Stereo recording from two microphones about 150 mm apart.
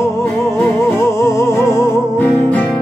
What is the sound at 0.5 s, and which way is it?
Music, 20° left (ahead or behind).